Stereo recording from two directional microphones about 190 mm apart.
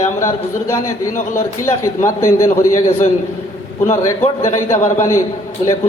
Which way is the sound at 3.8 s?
15° left (ahead or behind).